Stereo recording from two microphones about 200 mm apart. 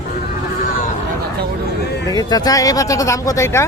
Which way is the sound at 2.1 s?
20° left (ahead or behind).